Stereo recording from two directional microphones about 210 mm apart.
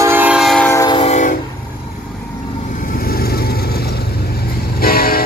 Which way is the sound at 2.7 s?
40° left (ahead or behind).